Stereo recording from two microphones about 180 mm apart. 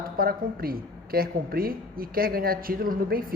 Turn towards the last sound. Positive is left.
turn(degrees=-55)  # may be behind; listen again after turning